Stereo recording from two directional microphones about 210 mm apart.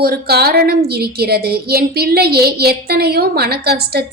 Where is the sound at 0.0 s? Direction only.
50° right (ahead or behind).